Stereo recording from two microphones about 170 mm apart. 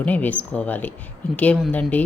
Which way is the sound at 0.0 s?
10° left (ahead or behind).